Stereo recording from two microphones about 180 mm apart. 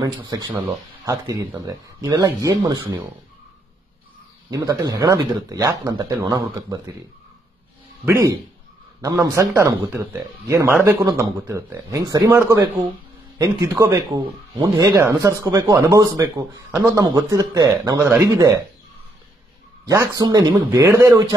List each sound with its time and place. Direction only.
0.0 s speech: 20° right (ahead or behind)
4.5 s speech: 20° right (ahead or behind)
8.0 s speech: 15° right (ahead or behind)
19.9 s speech: 20° right (ahead or behind)